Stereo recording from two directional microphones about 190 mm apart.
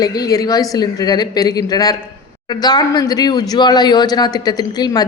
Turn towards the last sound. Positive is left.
turn(degrees=20)  # may be behind; listen again after turning